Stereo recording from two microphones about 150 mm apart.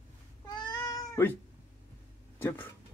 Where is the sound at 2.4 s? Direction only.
15° left (ahead or behind).